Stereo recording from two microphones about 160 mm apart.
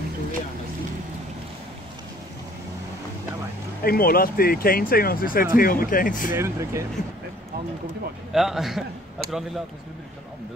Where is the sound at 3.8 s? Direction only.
70° left (ahead or behind).